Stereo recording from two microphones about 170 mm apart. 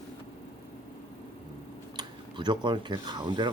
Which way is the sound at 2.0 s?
25° right (ahead or behind).